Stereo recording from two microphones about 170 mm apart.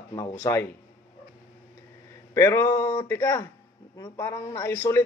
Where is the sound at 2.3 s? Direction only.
15° left (ahead or behind).